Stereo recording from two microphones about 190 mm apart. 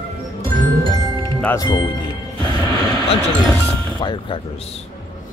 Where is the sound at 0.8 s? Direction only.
20° left (ahead or behind).